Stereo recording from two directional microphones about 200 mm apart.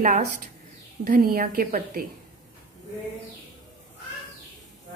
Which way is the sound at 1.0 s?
45° right (ahead or behind).